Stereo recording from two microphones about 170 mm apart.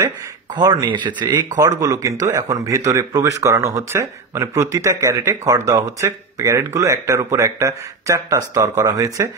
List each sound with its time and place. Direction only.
0.6 s speech: 20° right (ahead or behind)